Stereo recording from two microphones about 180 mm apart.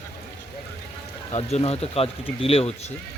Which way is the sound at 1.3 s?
35° left (ahead or behind).